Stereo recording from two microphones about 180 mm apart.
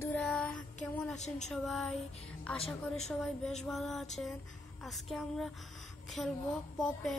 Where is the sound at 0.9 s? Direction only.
5° left (ahead or behind).